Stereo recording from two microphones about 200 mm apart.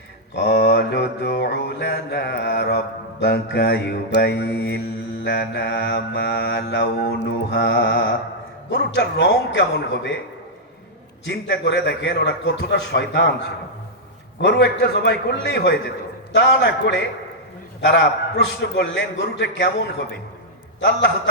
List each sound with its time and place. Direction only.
0.3 s mantra: 60° left (ahead or behind)
11.3 s mantra: 60° left (ahead or behind)
14.4 s mantra: 60° left (ahead or behind)